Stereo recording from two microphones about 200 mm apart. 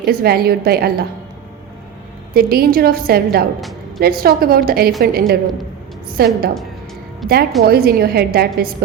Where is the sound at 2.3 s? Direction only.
50° right (ahead or behind).